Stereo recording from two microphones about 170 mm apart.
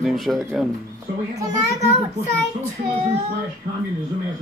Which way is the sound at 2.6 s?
40° right (ahead or behind).